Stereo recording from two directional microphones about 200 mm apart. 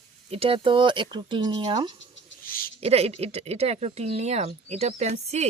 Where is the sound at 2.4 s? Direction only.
45° left (ahead or behind).